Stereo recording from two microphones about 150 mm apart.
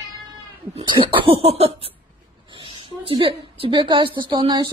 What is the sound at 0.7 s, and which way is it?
A woman's voice, 35° right (ahead or behind).